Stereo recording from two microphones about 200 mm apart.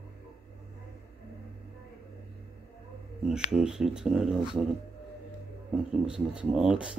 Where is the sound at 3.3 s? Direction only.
5° right (ahead or behind).